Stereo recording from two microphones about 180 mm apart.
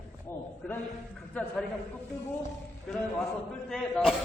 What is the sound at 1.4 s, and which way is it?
Speech, 5° left (ahead or behind).